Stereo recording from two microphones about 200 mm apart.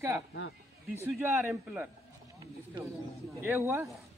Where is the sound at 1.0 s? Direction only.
10° right (ahead or behind).